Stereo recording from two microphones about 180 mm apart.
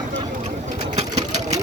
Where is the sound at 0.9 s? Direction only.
40° right (ahead or behind).